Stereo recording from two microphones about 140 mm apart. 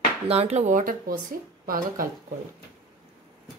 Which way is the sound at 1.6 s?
90° right.